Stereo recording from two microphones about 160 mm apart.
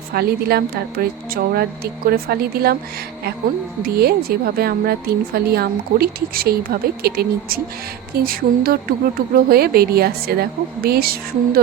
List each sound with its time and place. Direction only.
0.1 s a woman's voice: 75° right (ahead or behind)
3.8 s a woman's voice: 75° right (ahead or behind)